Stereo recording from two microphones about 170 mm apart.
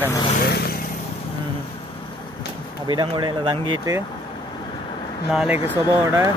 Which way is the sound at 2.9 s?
25° right (ahead or behind).